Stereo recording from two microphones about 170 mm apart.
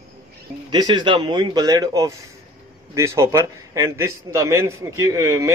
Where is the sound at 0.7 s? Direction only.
25° right (ahead or behind).